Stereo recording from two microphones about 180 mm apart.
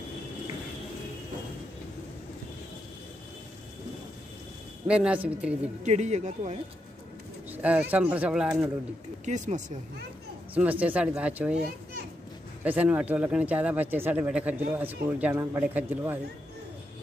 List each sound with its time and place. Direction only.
4.8 s speech: 5° right (ahead or behind)
5.9 s speech: 40° right (ahead or behind)
7.5 s speech: 10° right (ahead or behind)
9.2 s speech: 40° right (ahead or behind)
10.5 s speech: 10° right (ahead or behind)
12.6 s speech: 10° right (ahead or behind)